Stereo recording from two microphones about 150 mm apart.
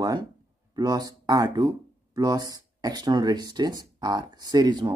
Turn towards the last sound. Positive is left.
turn(degrees=-30)  # may be behind; listen again after turning